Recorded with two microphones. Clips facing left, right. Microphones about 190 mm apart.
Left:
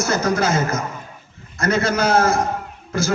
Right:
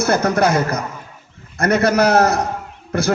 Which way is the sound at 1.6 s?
60° right (ahead or behind).